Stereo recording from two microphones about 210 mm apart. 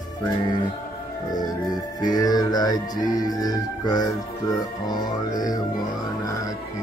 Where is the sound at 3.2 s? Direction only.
20° left (ahead or behind).